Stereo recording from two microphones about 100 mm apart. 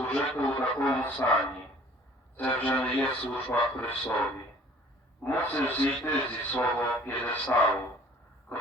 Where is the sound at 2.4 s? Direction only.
15° left (ahead or behind).